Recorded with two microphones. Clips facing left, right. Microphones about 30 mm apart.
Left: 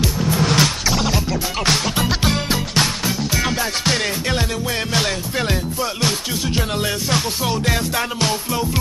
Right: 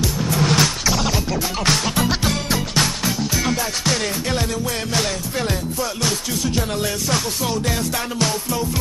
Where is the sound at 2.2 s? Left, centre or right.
Centre.